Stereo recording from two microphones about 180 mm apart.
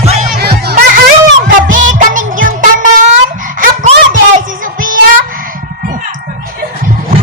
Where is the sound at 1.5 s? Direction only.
45° right (ahead or behind).